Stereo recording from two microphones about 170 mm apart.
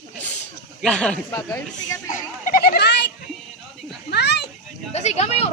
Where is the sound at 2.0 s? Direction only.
50° left (ahead or behind); by 3.1 s 85° left.